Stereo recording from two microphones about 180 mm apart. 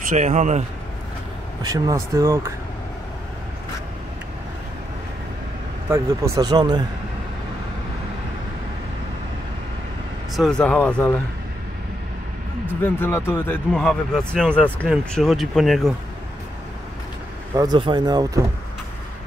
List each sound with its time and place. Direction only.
0.1 s speech: 40° right (ahead or behind)
1.6 s speech: 20° right (ahead or behind)
5.9 s speech: 15° right (ahead or behind)
10.3 s speech: 5° left (ahead or behind)
12.8 s speech: 15° left (ahead or behind)
17.6 s speech: 25° right (ahead or behind)